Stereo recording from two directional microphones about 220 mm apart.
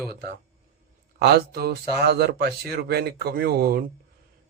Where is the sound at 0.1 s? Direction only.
45° right (ahead or behind).